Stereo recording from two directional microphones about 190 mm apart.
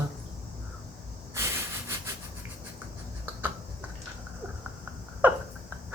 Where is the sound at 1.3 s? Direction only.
15° right (ahead or behind).